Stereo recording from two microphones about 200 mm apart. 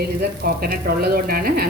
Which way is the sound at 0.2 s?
50° right (ahead or behind).